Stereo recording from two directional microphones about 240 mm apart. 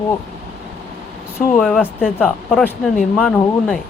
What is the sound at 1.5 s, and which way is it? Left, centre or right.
Speech, centre.